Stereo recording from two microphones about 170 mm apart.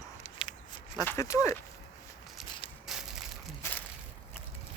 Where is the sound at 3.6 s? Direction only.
15° left (ahead or behind).